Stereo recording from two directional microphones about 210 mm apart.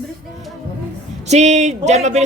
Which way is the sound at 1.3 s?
30° right (ahead or behind).